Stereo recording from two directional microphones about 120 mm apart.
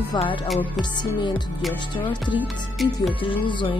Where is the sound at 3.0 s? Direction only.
45° left (ahead or behind).